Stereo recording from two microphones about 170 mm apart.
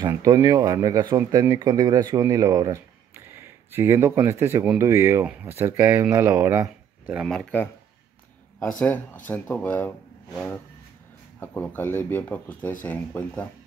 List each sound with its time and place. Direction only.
0.0 s speech: 20° right (ahead or behind)
7.2 s speech: centre (ahead or behind)
11.3 s speech: 10° left (ahead or behind)